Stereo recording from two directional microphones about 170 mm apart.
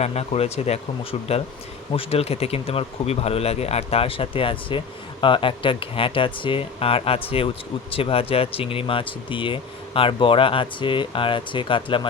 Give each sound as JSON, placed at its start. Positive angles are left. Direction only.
{"t": 0.0, "sound": "speech", "side_deg": 40}